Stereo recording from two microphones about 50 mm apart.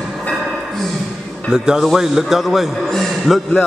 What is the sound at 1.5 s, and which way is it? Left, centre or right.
A man's voice, centre.